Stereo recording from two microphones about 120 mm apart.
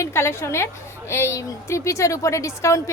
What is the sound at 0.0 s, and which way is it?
A woman's voice, 20° left (ahead or behind).